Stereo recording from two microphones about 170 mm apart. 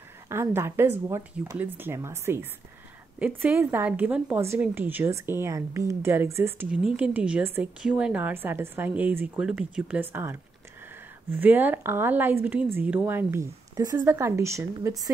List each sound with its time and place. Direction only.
0.3 s speech: 15° right (ahead or behind)